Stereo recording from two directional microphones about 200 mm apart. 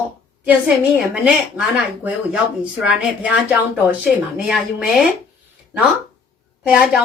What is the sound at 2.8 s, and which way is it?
A woman's voice, 5° right (ahead or behind).